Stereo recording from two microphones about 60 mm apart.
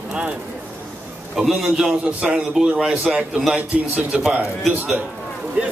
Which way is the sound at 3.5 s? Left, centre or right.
Right.